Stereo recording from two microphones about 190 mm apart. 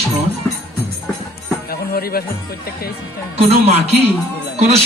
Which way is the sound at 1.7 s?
50° left (ahead or behind).